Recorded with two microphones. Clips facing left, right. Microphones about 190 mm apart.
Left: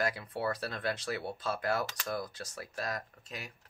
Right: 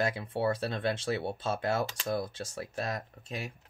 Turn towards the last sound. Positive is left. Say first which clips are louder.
# right 5 dB
turn(degrees=-25)  # may be behind; listen again after turning